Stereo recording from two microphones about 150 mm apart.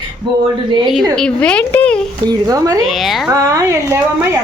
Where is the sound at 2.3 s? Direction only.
25° right (ahead or behind).